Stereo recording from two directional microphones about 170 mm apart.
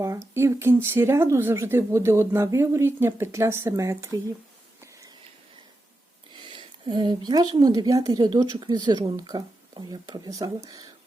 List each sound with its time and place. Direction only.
0.0 s speech: 15° right (ahead or behind)
6.3 s speech: 30° right (ahead or behind)